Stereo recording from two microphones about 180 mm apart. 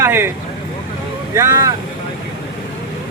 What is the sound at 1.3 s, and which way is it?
Speech, 15° right (ahead or behind).